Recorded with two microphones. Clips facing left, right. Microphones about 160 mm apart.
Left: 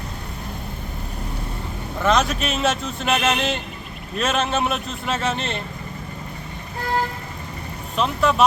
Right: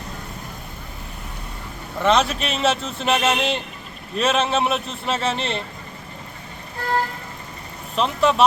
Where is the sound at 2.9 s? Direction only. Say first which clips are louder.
Right 1 dB; 30° right (ahead or behind).